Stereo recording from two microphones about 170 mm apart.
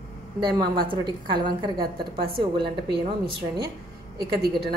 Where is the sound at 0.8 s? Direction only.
25° right (ahead or behind).